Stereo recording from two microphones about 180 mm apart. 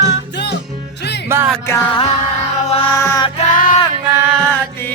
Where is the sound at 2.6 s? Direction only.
35° left (ahead or behind).